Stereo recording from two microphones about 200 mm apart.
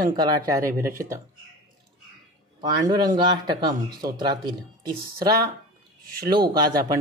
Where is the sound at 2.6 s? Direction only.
20° right (ahead or behind).